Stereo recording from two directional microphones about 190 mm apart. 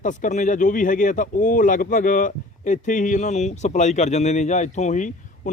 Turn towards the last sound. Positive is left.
turn(degrees=40)  # may be behind; listen again after turning